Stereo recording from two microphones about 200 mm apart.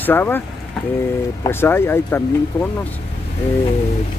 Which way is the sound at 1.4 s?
10° left (ahead or behind).